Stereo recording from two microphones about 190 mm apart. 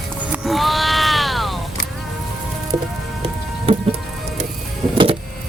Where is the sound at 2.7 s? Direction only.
20° right (ahead or behind).